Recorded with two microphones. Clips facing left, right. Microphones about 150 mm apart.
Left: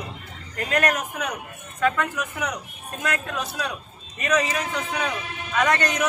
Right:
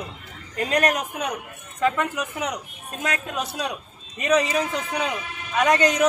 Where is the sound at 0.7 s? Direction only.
20° right (ahead or behind).